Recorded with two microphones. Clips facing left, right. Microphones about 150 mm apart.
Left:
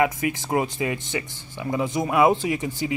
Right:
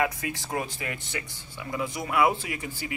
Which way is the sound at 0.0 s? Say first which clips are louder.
Left 6 dB; 20° left (ahead or behind).